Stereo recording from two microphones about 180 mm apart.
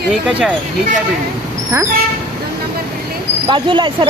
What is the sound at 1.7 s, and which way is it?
Speech, 15° right (ahead or behind).